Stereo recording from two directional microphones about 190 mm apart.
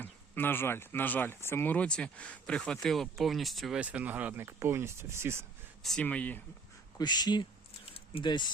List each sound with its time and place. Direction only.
0.0 s speech: 10° left (ahead or behind); by 5.5 s 15° right (ahead or behind)
5.8 s speech: 5° left (ahead or behind)
7.0 s speech: 20° left (ahead or behind)